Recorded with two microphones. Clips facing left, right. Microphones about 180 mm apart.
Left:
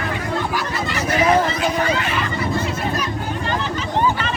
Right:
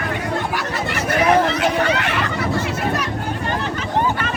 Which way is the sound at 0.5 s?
65° right (ahead or behind).